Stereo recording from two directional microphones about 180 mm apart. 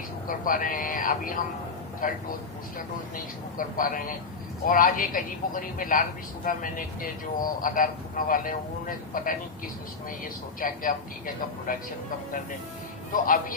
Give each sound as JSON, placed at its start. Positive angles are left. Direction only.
{"t": 0.3, "sound": "a man's voice", "side_deg": 50}
{"t": 3.6, "sound": "a man's voice", "side_deg": 50}
{"t": 10.6, "sound": "a man's voice", "side_deg": 50}
{"t": 13.1, "sound": "a man's voice", "side_deg": 50}